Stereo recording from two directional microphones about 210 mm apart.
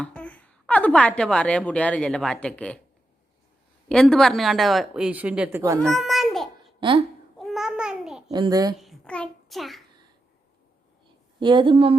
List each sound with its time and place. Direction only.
0.0 s speech: 5° left (ahead or behind)
3.8 s speech: 5° left (ahead or behind); by 5.8 s 10° right (ahead or behind)
5.8 s a sound: centre (ahead or behind)
6.7 s speech: 25° right (ahead or behind)
7.3 s babbling: centre (ahead or behind)
8.3 s a woman's voice: 20° right (ahead or behind)
8.8 s a child's voice: centre (ahead or behind)
11.3 s a woman's voice: 20° right (ahead or behind)